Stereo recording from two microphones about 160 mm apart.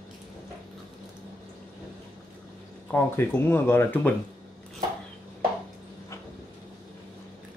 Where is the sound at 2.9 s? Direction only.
15° left (ahead or behind).